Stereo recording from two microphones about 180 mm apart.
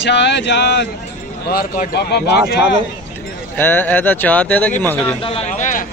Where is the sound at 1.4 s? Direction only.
55° left (ahead or behind).